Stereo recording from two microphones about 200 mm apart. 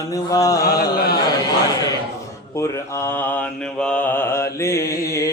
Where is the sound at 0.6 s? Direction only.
50° left (ahead or behind).